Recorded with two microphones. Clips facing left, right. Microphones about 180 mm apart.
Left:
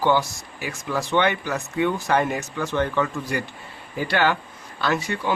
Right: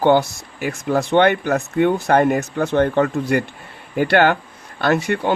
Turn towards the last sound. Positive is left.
turn(degrees=-60)  # may be behind; listen again after turning